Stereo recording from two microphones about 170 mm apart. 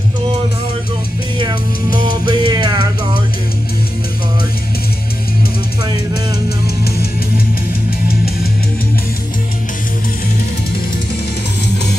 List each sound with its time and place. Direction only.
2.0 s music: 25° right (ahead or behind)